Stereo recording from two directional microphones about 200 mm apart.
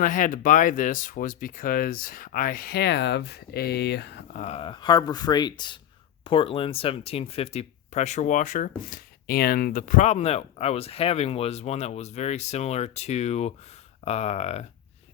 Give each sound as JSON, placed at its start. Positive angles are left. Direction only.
{"t": 0.0, "sound": "speech", "side_deg": 40}
{"t": 4.4, "sound": "speech", "side_deg": 30}